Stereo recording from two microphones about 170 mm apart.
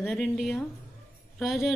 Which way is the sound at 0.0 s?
Centre (ahead or behind).